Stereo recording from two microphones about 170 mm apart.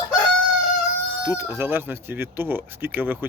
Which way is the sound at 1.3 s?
15° right (ahead or behind).